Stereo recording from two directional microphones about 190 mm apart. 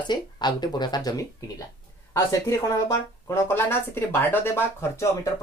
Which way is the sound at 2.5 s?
15° left (ahead or behind).